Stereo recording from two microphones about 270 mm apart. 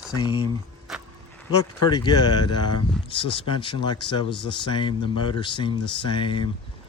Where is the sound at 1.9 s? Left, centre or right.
Centre.